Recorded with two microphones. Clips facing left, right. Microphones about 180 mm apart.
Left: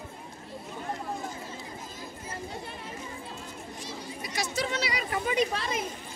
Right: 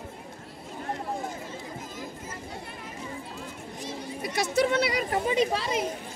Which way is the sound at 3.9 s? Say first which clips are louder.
Right 6 dB; 60° right (ahead or behind).